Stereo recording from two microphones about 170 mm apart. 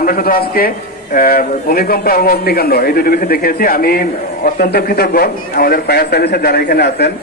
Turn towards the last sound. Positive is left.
turn(degrees=70)  # may be behind; listen again after turning